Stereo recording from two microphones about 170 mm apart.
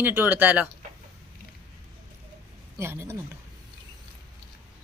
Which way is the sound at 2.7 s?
15° right (ahead or behind).